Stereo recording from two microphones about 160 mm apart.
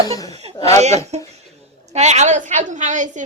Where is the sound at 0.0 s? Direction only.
20° left (ahead or behind).